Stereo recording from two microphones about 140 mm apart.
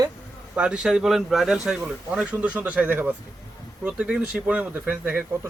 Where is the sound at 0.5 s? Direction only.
5° right (ahead or behind).